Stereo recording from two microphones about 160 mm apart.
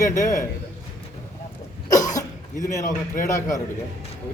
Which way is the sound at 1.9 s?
20° left (ahead or behind).